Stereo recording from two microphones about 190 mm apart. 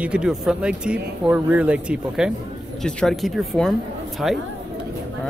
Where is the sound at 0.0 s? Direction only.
5° right (ahead or behind).